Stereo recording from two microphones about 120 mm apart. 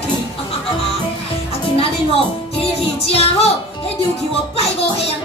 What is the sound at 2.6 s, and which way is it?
Music, 55° left (ahead or behind).